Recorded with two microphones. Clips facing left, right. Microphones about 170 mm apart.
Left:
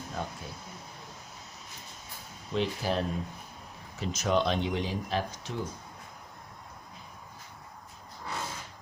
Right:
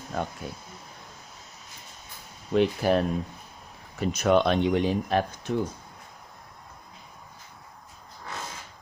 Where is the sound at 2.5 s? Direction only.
55° right (ahead or behind).